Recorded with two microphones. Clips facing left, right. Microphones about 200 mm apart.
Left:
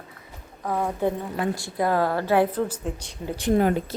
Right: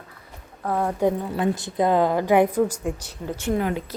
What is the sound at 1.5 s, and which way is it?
A woman's voice, 20° right (ahead or behind).